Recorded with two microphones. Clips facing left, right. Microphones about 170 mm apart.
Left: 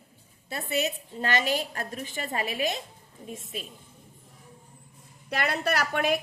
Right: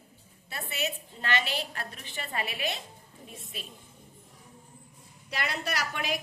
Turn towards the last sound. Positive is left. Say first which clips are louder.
# left 7 dB
turn(degrees=55)  # may be behind; listen again after turning